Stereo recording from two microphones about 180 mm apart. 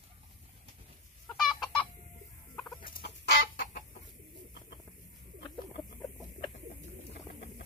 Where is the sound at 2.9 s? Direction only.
55° left (ahead or behind).